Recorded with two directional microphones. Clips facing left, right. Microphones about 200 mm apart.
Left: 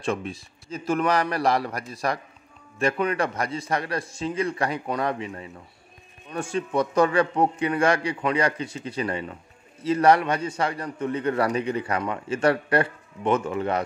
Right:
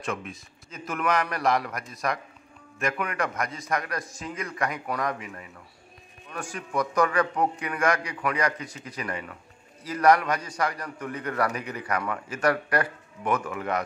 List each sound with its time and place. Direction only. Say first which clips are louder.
0.0 s a man's voice: left 5 dB; 30° left (ahead or behind)